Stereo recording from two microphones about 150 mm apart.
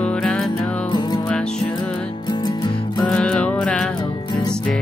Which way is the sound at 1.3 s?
5° left (ahead or behind).